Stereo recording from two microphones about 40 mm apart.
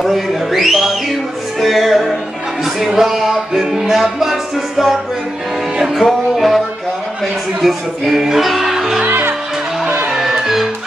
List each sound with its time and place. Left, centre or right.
0.0 s speech: centre
2.9 s music: centre
5.9 s music: centre
7.6 s music: centre
9.0 s music: right
10.0 s music: centre